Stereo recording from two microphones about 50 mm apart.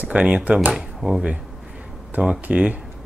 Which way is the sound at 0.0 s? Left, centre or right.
Right.